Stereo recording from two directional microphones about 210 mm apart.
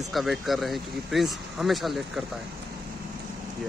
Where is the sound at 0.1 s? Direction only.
Centre (ahead or behind).